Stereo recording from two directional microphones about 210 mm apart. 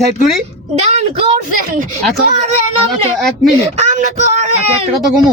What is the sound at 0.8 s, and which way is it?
Speech, 30° right (ahead or behind).